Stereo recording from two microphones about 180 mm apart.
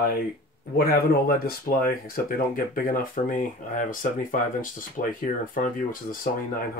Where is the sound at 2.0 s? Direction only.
55° left (ahead or behind).